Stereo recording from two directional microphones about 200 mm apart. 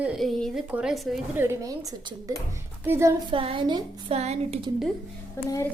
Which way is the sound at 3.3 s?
25° right (ahead or behind).